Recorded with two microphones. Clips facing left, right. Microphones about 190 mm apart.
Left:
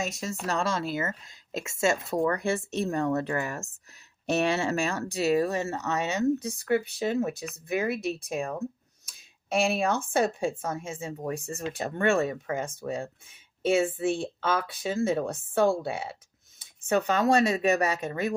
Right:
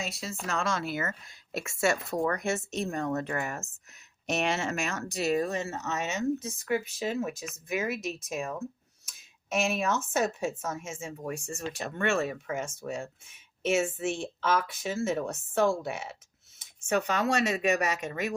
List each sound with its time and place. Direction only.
0.0 s speech: 45° left (ahead or behind)
5.7 s speech: 60° left (ahead or behind)
7.0 s speech: 35° left (ahead or behind)